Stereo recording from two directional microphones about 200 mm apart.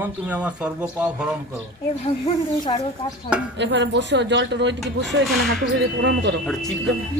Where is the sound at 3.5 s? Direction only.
65° right (ahead or behind).